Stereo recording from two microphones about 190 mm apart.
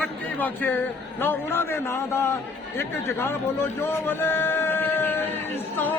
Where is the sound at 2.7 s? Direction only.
10° left (ahead or behind).